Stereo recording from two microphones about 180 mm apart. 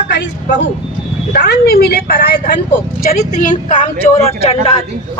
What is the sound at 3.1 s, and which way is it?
Speech, 45° left (ahead or behind).